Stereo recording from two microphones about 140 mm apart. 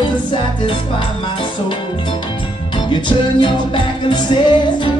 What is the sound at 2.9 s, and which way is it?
Music, 35° left (ahead or behind).